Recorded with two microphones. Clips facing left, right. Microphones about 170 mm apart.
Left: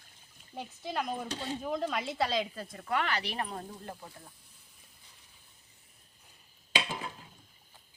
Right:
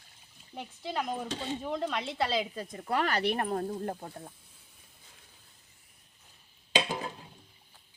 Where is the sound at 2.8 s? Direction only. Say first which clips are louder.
Right 4 dB; 35° right (ahead or behind).